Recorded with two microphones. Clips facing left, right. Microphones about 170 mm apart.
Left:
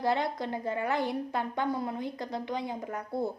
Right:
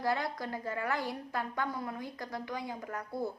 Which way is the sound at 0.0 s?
25° left (ahead or behind).